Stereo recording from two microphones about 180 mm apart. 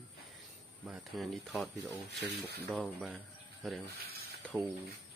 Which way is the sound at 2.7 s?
5° right (ahead or behind).